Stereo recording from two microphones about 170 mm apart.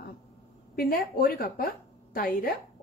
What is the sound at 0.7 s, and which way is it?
A woman's voice, 60° left (ahead or behind).